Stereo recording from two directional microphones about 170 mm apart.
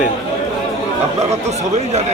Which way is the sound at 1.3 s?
40° right (ahead or behind).